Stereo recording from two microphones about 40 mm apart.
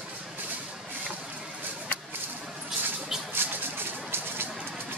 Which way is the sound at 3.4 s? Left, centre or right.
Right.